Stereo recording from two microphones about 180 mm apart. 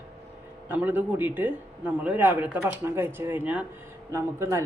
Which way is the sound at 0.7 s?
10° right (ahead or behind).